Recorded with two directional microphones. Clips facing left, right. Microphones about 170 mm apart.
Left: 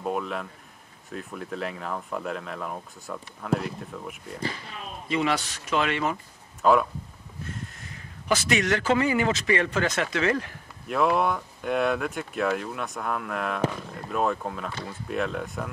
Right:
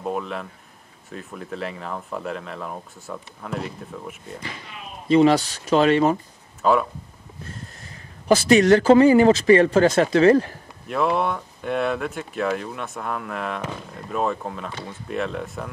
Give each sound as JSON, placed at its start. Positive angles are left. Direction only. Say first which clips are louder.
{"t": 0.0, "sound": "speech", "louder": "right 2 dB", "side_deg": 0}
{"t": 5.0, "sound": "speech", "louder": "right 10 dB", "side_deg": -35}
{"t": 6.6, "sound": "speech", "louder": "right 1 dB", "side_deg": 0}
{"t": 7.4, "sound": "a man's voice", "louder": "left 1 dB", "side_deg": -35}
{"t": 10.9, "sound": "speech", "louder": "right 1 dB", "side_deg": 0}